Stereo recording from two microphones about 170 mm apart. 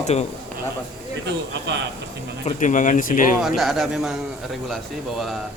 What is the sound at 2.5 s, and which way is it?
Speech, 50° left (ahead or behind).